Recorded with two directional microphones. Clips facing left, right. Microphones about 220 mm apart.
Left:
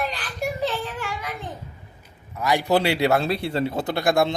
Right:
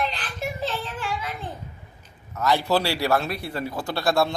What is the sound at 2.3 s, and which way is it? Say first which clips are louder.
A man's voice: left 1 dB; 15° left (ahead or behind).